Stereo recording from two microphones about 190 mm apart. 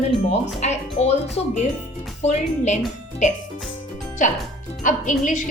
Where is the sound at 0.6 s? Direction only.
35° left (ahead or behind).